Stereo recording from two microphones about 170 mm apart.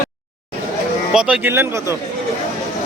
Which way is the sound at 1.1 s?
10° right (ahead or behind).